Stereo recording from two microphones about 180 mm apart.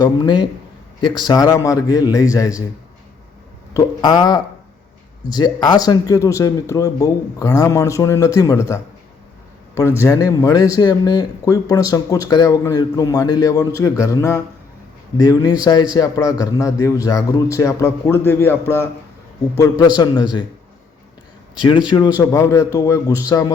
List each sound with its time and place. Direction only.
0.0 s speech: 20° left (ahead or behind)
3.8 s speech: 25° left (ahead or behind)
20.0 s speech: 25° left (ahead or behind)
21.6 s speech: 25° left (ahead or behind)